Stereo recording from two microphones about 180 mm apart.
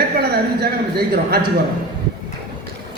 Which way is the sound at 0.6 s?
60° right (ahead or behind).